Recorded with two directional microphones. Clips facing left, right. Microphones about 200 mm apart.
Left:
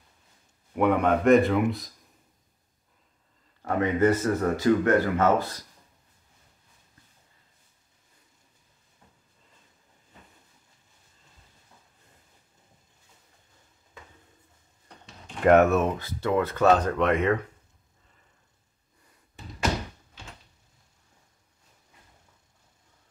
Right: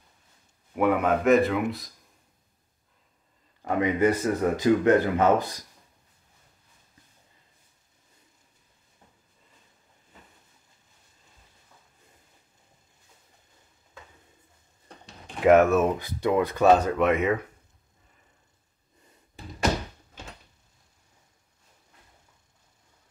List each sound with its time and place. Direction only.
0.7 s speech: 5° right (ahead or behind)
3.6 s speech: 15° right (ahead or behind)
15.4 s speech: centre (ahead or behind)
16.0 s speech: 15° right (ahead or behind)